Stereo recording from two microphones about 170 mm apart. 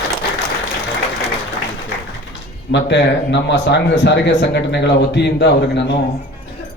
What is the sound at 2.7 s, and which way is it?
Speech, 90° left.